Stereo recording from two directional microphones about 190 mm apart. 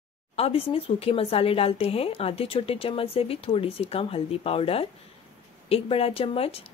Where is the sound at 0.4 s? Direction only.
30° left (ahead or behind).